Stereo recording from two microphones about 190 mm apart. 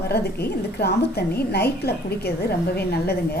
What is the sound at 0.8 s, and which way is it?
A woman's voice, 55° left (ahead or behind).